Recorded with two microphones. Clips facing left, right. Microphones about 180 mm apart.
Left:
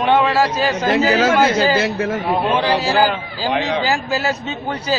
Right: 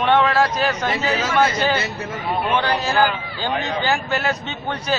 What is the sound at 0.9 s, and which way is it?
Speech, 90° left.